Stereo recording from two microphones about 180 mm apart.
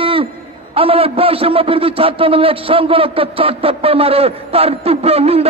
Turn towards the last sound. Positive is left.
turn(degrees=-35)  # may be behind; listen again after turning